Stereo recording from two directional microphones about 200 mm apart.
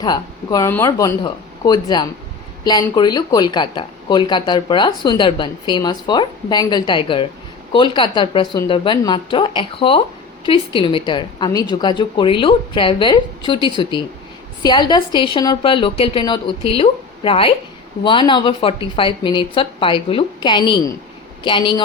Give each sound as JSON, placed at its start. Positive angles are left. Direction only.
{"t": 0.0, "sound": "speech", "side_deg": 20}